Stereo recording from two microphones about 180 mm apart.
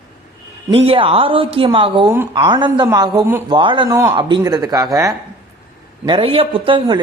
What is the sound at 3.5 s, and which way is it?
A woman's voice, 25° right (ahead or behind).